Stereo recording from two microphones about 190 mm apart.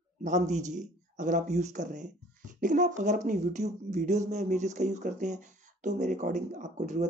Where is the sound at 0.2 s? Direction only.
40° right (ahead or behind).